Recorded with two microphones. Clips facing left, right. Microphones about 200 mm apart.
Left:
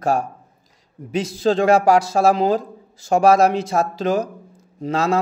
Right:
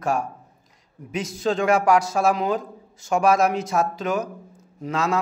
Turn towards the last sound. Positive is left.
turn(degrees=30)  # may be behind; listen again after turning